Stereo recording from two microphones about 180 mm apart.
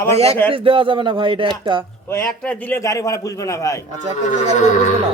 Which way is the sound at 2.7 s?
20° left (ahead or behind).